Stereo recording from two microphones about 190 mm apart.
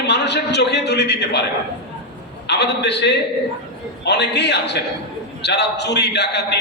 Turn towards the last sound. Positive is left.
turn(degrees=60)  # may be behind; listen again after turning